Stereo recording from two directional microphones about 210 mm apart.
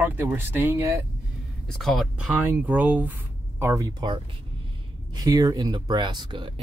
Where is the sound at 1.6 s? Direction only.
Centre (ahead or behind); by 4.1 s 20° right (ahead or behind).